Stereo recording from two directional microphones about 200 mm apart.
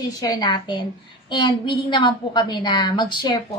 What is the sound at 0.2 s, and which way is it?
A woman's voice, 20° left (ahead or behind).